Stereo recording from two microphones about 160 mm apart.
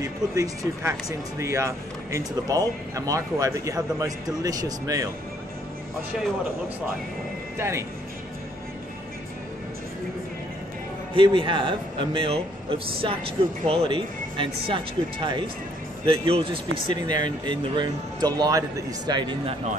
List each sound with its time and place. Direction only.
0.4 s speech: 20° right (ahead or behind)
7.5 s speech: 15° right (ahead or behind)
11.1 s a man's voice: 30° right (ahead or behind)
16.7 s speech: 50° left (ahead or behind)
17.1 s speech: 25° right (ahead or behind)